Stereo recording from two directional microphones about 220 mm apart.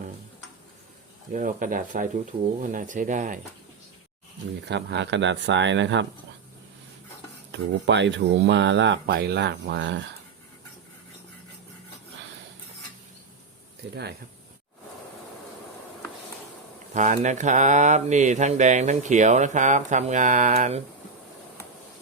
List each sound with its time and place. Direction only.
1.3 s speech: 35° right (ahead or behind)
4.6 s speech: 50° right (ahead or behind)
7.5 s speech: 55° right (ahead or behind)
13.9 s speech: 50° right (ahead or behind)
16.9 s speech: 35° right (ahead or behind)